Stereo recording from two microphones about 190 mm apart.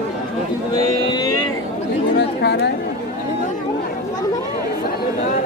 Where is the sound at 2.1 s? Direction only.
65° left (ahead or behind).